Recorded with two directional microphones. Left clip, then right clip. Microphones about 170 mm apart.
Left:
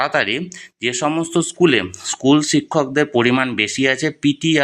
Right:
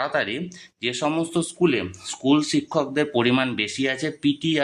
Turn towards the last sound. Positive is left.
turn(degrees=25)  # may be behind; listen again after turning